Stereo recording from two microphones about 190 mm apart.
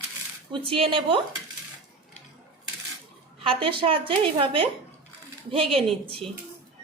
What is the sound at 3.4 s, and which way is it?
A woman's voice, 30° right (ahead or behind).